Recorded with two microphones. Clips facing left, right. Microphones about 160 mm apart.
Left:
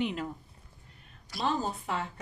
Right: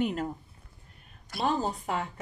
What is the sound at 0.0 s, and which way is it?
Speech, 45° right (ahead or behind).